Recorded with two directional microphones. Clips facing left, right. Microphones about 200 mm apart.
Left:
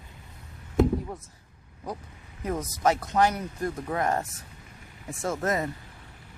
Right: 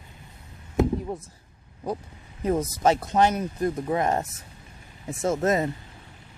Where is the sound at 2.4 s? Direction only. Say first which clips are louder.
Right 4 dB; 25° right (ahead or behind).